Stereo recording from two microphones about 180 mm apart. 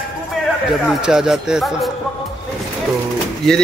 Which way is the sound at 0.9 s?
5° right (ahead or behind).